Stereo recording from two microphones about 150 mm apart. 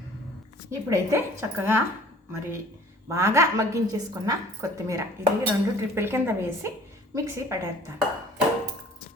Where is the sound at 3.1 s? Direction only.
20° right (ahead or behind).